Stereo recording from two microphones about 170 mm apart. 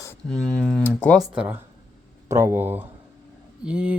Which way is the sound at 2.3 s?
15° right (ahead or behind).